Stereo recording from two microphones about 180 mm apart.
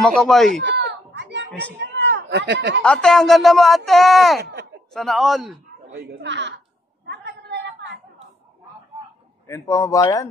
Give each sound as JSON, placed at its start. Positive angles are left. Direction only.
{"t": 0.0, "sound": "speech", "side_deg": 0}
{"t": 0.7, "sound": "a sound", "side_deg": -75}
{"t": 2.8, "sound": "speech", "side_deg": 5}
{"t": 4.4, "sound": "speech", "side_deg": -70}
{"t": 4.9, "sound": "speech", "side_deg": 0}
{"t": 5.9, "sound": "speech", "side_deg": -70}
{"t": 7.1, "sound": "a sound", "side_deg": -70}
{"t": 9.5, "sound": "speech", "side_deg": 20}